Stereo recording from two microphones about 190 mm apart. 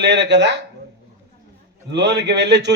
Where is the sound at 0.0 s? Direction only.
65° right (ahead or behind).